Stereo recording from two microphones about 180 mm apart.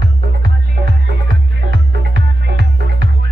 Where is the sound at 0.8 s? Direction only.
70° right (ahead or behind).